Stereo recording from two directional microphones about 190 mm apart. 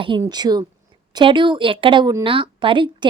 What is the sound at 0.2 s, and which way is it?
Speech, 20° right (ahead or behind).